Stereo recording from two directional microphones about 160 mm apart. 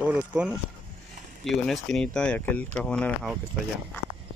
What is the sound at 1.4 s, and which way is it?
Speech, centre (ahead or behind).